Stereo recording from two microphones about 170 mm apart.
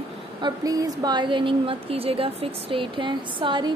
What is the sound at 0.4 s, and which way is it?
A woman's voice, 20° right (ahead or behind).